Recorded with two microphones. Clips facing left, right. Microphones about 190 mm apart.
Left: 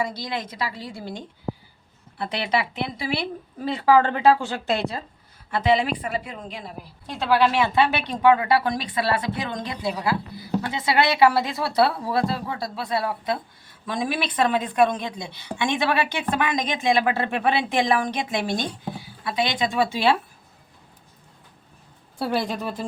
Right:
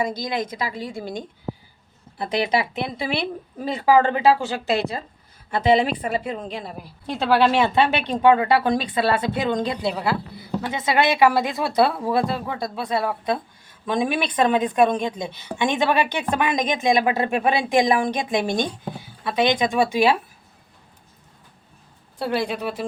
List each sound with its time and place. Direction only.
0.2 s a woman's voice: 20° right (ahead or behind)
5.5 s a woman's voice: 20° right (ahead or behind)
22.3 s speech: centre (ahead or behind)